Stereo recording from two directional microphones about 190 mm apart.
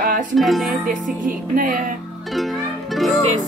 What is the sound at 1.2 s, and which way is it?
Music, 45° right (ahead or behind).